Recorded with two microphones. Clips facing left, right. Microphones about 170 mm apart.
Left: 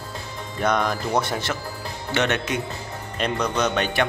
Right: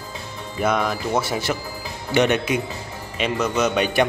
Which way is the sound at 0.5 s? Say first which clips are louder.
Right 1 dB; 5° right (ahead or behind).